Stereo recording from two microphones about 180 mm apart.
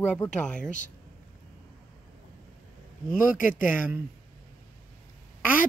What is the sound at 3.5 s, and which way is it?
Speech, 50° left (ahead or behind).